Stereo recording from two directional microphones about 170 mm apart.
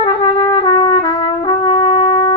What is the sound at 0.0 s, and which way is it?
Trumpet, 30° left (ahead or behind).